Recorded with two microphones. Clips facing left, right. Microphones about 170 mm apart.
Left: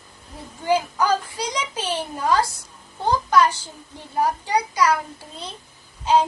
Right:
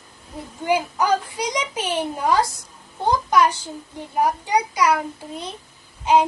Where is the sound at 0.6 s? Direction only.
15° right (ahead or behind).